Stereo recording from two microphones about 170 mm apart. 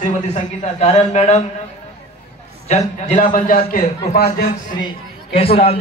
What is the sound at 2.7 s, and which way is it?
A man's voice, 45° left (ahead or behind).